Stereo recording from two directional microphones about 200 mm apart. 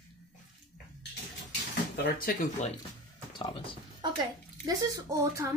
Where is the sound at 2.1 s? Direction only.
45° left (ahead or behind).